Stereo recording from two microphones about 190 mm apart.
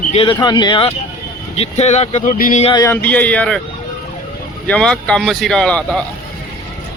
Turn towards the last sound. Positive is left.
turn(degrees=5)  # may be behind; listen again after turning